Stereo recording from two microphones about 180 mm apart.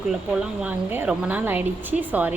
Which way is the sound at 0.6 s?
10° right (ahead or behind).